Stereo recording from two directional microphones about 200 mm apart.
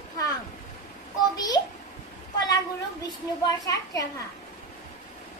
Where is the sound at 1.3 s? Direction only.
20° left (ahead or behind).